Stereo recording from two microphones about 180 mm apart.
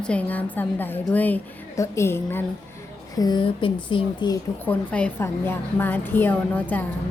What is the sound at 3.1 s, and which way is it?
Speech, 25° left (ahead or behind).